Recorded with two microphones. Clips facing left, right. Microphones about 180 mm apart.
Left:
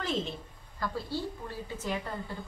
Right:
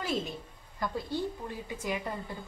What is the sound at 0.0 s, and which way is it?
A woman's voice, 10° right (ahead or behind).